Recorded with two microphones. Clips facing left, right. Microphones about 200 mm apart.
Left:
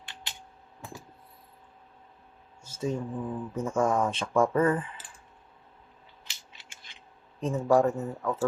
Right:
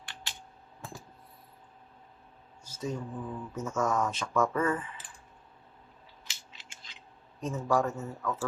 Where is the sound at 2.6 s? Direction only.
25° left (ahead or behind).